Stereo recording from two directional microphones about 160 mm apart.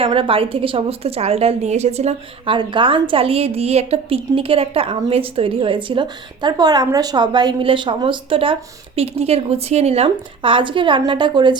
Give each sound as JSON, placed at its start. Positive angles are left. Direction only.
{"t": 0.0, "sound": "a woman's voice", "side_deg": -35}
{"t": 2.6, "sound": "a woman's voice", "side_deg": -30}